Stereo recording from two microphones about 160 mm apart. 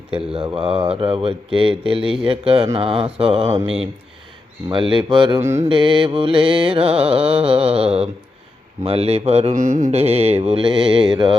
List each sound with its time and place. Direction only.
0.3 s music: 35° right (ahead or behind)
4.7 s music: 30° right (ahead or behind)
5.4 s mantra: 15° right (ahead or behind)
5.6 s music: 30° right (ahead or behind)
9.6 s music: 50° right (ahead or behind); by 11.0 s 30° right (ahead or behind)
11.1 s mantra: 30° right (ahead or behind)